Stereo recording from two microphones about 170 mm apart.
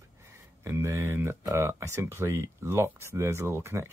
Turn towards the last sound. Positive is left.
turn(degrees=-15)  # may be behind; listen again after turning